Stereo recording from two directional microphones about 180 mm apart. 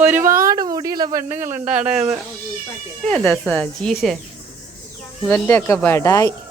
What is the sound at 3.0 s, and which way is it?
Speech, 5° left (ahead or behind).